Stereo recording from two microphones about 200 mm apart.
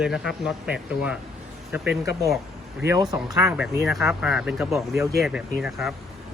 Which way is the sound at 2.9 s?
20° right (ahead or behind).